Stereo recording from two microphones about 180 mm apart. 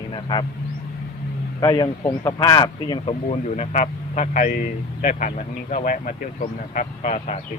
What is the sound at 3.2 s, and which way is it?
A man's voice, 40° left (ahead or behind).